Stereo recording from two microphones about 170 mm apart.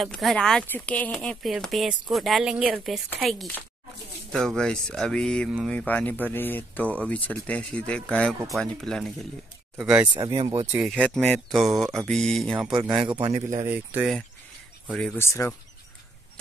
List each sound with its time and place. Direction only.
0.0 s speech: centre (ahead or behind)
12.7 s speech: 25° right (ahead or behind)
13.2 s speech: 40° right (ahead or behind)
13.7 s speech: 10° right (ahead or behind)
14.9 s speech: centre (ahead or behind)
15.1 s speech: 15° left (ahead or behind)